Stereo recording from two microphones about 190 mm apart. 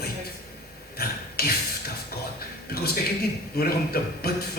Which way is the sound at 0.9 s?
55° left (ahead or behind).